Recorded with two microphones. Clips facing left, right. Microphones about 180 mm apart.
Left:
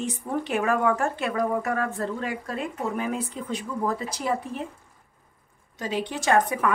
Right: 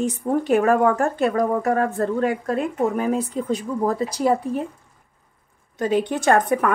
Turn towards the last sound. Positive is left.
turn(degrees=-50)  # may be behind; listen again after turning